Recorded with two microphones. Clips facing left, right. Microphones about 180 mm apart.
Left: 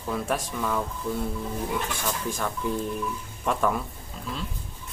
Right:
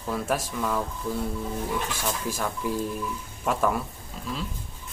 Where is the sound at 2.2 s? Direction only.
5° right (ahead or behind).